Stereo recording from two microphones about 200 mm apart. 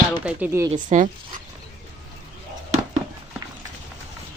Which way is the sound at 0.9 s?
35° right (ahead or behind).